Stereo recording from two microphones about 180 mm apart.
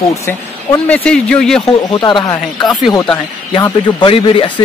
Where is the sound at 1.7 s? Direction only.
25° left (ahead or behind).